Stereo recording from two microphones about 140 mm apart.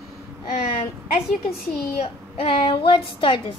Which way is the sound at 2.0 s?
45° left (ahead or behind).